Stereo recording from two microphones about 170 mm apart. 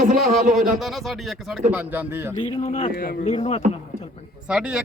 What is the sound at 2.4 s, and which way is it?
Speech, 30° left (ahead or behind).